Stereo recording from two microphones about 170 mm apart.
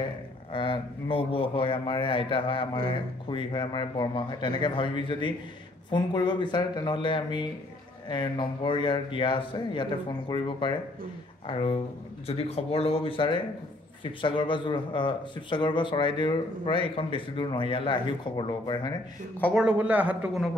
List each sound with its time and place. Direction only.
0.5 s a man's voice: 30° left (ahead or behind)
19.5 s a man's voice: 5° right (ahead or behind)